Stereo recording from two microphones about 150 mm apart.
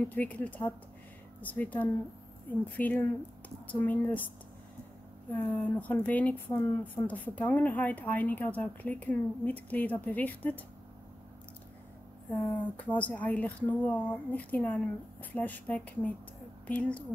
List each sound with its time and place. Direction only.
0.0 s speech: 10° left (ahead or behind)
5.3 s speech: 10° left (ahead or behind)
12.3 s speech: 15° left (ahead or behind)